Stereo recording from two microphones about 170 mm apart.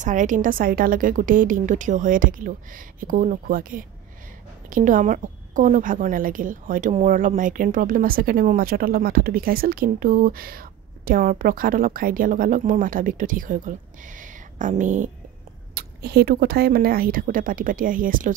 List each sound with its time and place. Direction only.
0.0 s a woman's voice: 45° right (ahead or behind)
15.7 s speech: 70° right (ahead or behind); by 18.3 s 55° right (ahead or behind)